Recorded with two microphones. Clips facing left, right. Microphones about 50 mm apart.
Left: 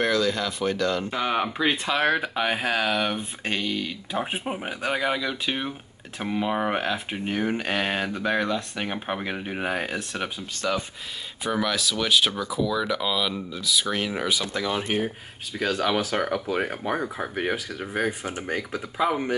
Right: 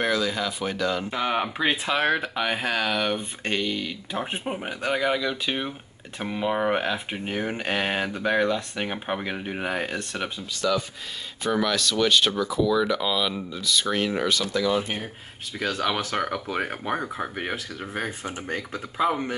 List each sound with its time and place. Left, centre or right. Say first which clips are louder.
0.0 s speech: left 1 dB; centre
10.5 s speech: right 3 dB; left
11.4 s speech: right 1 dB; centre
14.5 s speech: right 3 dB; left
15.5 s speech: left 2 dB; centre